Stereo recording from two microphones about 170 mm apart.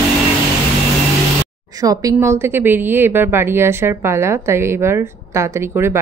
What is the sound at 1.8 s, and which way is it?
A woman's voice, 20° right (ahead or behind).